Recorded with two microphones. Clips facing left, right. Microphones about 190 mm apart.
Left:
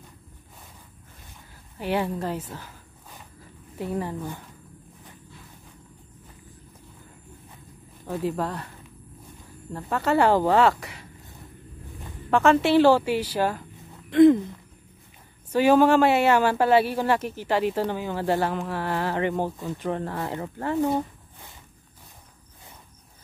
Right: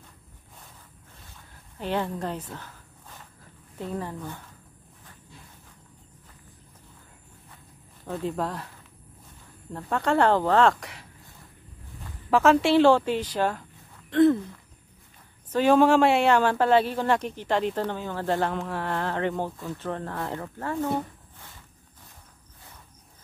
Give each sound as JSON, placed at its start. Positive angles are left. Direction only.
{"t": 1.5, "sound": "speech", "side_deg": 10}
{"t": 2.5, "sound": "a sound", "side_deg": 10}
{"t": 3.7, "sound": "speech", "side_deg": 15}
{"t": 8.1, "sound": "speech", "side_deg": 5}
{"t": 12.3, "sound": "speech", "side_deg": 0}
{"t": 15.5, "sound": "speech", "side_deg": 5}